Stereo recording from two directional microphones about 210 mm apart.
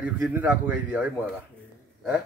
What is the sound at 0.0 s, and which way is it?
A man's voice, 5° right (ahead or behind).